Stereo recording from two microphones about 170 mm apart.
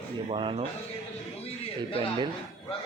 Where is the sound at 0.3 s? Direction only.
30° right (ahead or behind).